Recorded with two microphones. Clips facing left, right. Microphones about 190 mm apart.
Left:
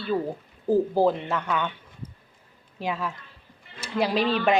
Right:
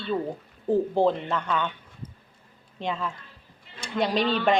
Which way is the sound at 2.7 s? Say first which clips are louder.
Left 1 dB; 5° left (ahead or behind).